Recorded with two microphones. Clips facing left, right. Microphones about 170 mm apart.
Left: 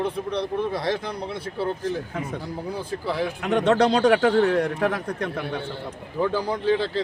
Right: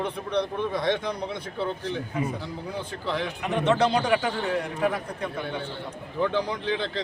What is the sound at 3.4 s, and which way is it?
Speech, 85° left.